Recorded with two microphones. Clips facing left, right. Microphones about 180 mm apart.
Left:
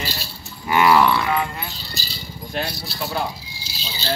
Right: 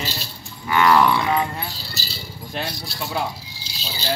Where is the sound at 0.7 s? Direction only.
15° left (ahead or behind).